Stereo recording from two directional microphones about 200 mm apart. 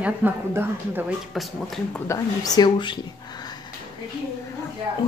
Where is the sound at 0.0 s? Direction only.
10° right (ahead or behind).